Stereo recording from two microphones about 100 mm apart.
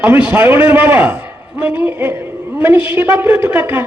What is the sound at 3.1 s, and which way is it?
Speech, 15° right (ahead or behind).